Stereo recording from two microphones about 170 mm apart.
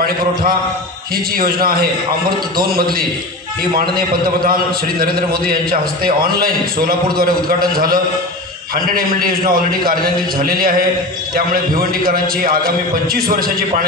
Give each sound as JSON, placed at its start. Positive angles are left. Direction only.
{"t": 1.1, "sound": "a man's voice", "side_deg": -60}